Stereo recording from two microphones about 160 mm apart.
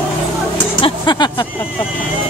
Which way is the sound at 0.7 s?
30° left (ahead or behind).